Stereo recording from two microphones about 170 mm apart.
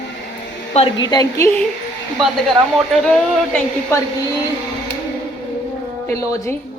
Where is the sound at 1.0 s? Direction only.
25° left (ahead or behind).